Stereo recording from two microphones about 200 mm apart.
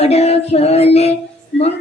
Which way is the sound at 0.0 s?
30° left (ahead or behind).